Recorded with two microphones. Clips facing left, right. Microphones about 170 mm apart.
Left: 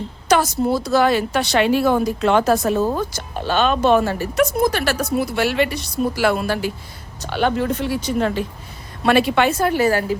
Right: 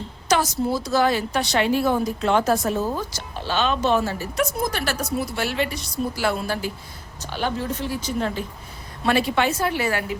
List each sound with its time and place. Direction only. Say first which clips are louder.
0.3 s a woman's voice: left 4 dB; 60° left (ahead or behind); by 10.2 s 40° left (ahead or behind)